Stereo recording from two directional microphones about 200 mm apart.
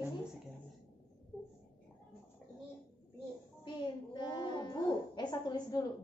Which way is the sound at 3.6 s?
20° left (ahead or behind).